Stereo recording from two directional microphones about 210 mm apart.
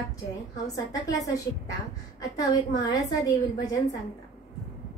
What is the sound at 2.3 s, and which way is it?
Speech, 20° left (ahead or behind).